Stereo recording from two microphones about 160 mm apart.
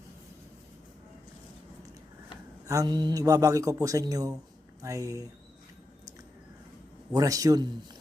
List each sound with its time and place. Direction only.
2.6 s speech: 25° right (ahead or behind)
7.1 s speech: 20° right (ahead or behind)